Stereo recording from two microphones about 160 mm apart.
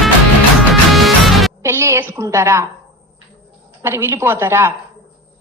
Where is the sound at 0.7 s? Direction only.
Centre (ahead or behind).